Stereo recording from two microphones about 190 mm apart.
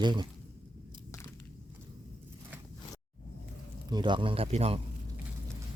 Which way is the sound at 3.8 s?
25° right (ahead or behind).